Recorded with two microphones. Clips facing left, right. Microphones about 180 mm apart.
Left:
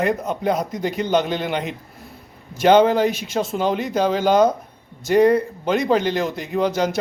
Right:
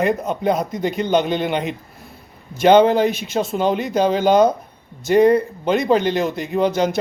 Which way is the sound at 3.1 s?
55° right (ahead or behind).